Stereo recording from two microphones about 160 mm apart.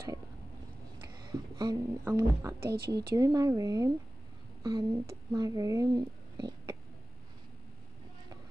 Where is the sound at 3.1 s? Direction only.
20° right (ahead or behind).